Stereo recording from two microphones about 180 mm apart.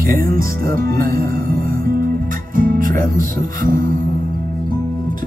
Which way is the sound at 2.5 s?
50° right (ahead or behind).